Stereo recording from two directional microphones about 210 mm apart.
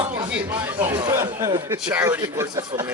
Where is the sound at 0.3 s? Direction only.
10° right (ahead or behind).